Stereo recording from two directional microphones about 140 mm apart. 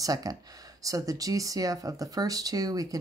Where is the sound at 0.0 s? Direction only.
25° right (ahead or behind).